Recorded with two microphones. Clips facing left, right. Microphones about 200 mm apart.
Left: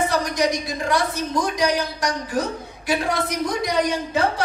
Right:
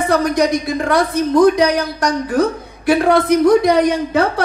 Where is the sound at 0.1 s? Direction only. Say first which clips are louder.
Right 7 dB; 55° right (ahead or behind).